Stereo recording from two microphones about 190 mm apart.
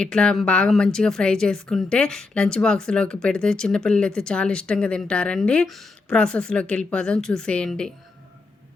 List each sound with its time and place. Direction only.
0.0 s speech: 5° left (ahead or behind)